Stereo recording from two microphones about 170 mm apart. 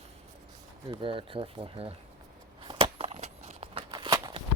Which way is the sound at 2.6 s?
30° right (ahead or behind).